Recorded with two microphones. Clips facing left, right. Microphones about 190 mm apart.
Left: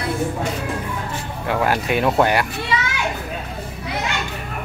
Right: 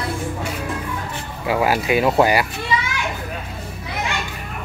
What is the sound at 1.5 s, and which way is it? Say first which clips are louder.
Speech: right 2 dB; 5° right (ahead or behind).